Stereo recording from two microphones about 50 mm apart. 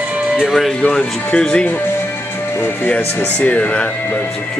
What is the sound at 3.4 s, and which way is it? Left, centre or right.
Speech, left.